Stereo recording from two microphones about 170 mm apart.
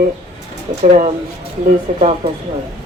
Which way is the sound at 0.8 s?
40° right (ahead or behind).